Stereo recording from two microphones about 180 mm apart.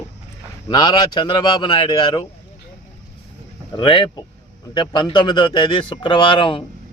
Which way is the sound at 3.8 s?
30° left (ahead or behind).